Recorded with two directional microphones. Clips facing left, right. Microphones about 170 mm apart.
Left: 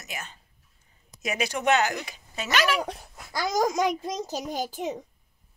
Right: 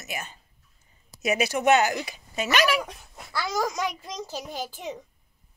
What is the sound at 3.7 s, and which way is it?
A child's voice, 50° left (ahead or behind).